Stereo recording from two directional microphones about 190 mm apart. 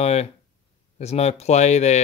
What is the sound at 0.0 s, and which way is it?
Speech, 35° left (ahead or behind).